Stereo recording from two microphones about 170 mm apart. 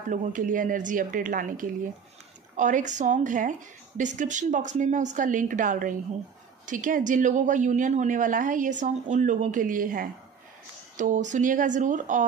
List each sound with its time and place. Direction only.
0.1 s a woman's voice: 50° right (ahead or behind)